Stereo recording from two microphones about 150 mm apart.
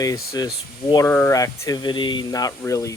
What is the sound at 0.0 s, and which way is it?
Speech, 25° left (ahead or behind).